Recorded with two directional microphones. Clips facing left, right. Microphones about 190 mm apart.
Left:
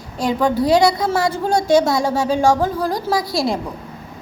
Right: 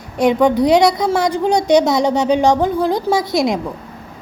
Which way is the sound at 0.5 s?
20° right (ahead or behind).